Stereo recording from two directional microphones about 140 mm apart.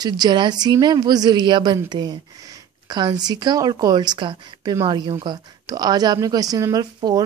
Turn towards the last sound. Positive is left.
turn(degrees=-25)  # may be behind; listen again after turning